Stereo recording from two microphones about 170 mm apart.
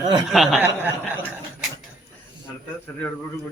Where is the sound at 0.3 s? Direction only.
5° right (ahead or behind).